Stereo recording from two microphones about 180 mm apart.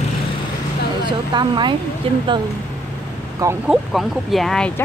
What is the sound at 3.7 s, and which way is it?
Speech, centre (ahead or behind).